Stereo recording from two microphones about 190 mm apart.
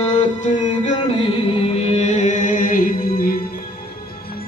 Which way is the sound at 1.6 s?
30° left (ahead or behind).